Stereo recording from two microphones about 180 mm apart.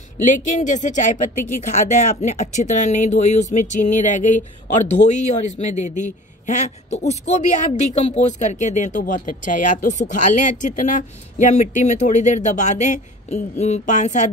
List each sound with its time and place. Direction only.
0.2 s a man's voice: 45° left (ahead or behind)